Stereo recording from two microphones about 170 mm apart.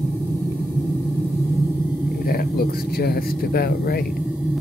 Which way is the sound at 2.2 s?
65° left (ahead or behind).